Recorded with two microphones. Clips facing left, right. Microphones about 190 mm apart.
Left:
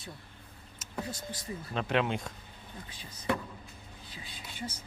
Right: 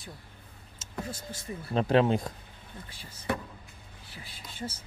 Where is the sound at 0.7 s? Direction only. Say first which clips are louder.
Even; 25° right (ahead or behind).